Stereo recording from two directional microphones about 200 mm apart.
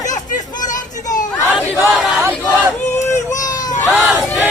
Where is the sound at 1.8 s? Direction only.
Centre (ahead or behind).